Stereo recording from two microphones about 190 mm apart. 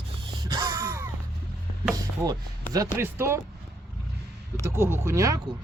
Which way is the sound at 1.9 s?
20° right (ahead or behind).